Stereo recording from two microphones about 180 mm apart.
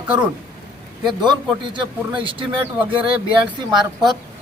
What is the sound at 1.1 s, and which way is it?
Speech, 25° right (ahead or behind).